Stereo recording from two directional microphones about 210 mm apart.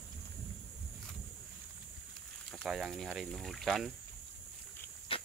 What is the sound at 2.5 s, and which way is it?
Speech, centre (ahead or behind).